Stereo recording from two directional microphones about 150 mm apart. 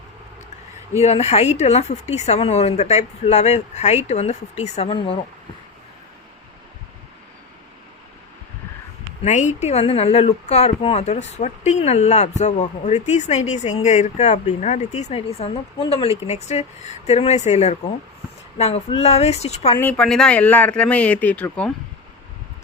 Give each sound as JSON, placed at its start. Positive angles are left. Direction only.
{"t": 1.0, "sound": "a woman's voice", "side_deg": 45}
{"t": 9.2, "sound": "a woman's voice", "side_deg": 55}
{"t": 19.8, "sound": "speech", "side_deg": 5}